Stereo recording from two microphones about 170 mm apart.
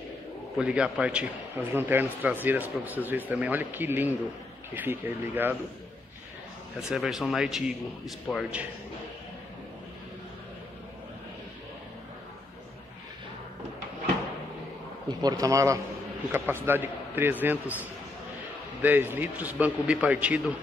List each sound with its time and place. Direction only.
0.6 s a man's voice: 5° right (ahead or behind)
6.9 s speech: centre (ahead or behind)
15.0 s a man's voice: 20° right (ahead or behind)
18.8 s a man's voice: 10° right (ahead or behind)